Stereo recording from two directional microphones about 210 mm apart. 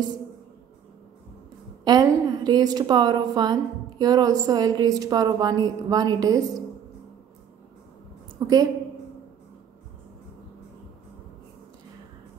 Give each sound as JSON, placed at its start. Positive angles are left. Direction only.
{"t": 1.9, "sound": "a woman's voice", "side_deg": -20}
{"t": 8.4, "sound": "a woman's voice", "side_deg": -20}